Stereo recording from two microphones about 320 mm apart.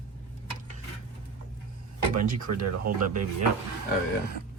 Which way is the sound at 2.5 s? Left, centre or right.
Right.